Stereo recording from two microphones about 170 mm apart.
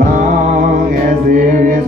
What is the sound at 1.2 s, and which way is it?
Mantra, 50° right (ahead or behind).